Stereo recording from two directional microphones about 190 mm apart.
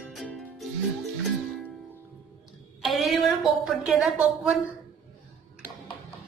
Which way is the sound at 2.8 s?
Centre (ahead or behind).